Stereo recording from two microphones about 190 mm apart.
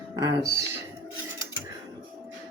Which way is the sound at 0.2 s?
15° right (ahead or behind).